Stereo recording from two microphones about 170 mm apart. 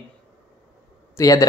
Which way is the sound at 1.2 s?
20° left (ahead or behind).